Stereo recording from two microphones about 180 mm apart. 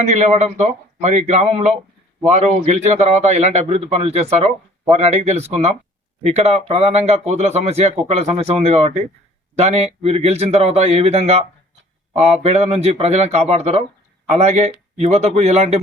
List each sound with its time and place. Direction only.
0.1 s a man's voice: 40° right (ahead or behind)